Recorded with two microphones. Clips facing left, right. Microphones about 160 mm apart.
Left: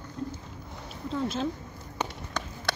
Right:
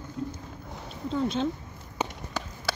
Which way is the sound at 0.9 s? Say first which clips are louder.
Right 3 dB; centre (ahead or behind).